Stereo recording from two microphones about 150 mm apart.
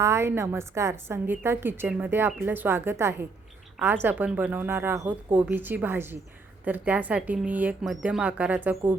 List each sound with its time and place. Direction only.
0.0 s a woman's voice: 20° right (ahead or behind)